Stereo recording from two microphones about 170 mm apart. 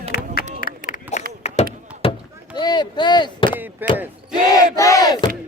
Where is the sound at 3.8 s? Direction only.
10° right (ahead or behind).